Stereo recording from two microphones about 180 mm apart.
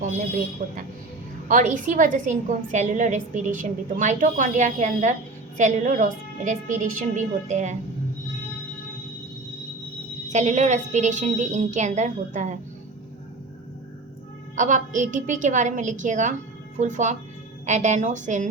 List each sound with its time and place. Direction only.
1.5 s a woman's voice: 45° right (ahead or behind)
10.2 s a woman's voice: 40° right (ahead or behind)
14.5 s a woman's voice: 45° right (ahead or behind)